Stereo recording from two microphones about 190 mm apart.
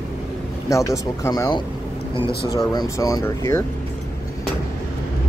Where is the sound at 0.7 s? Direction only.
15° left (ahead or behind).